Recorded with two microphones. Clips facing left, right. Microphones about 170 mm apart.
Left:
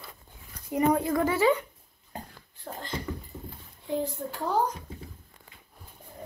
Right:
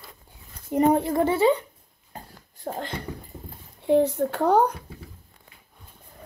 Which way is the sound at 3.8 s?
70° right (ahead or behind).